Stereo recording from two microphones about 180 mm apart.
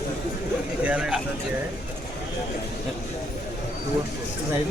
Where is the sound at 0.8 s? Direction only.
5° right (ahead or behind).